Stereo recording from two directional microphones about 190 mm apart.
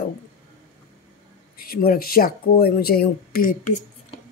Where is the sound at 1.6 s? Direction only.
50° left (ahead or behind).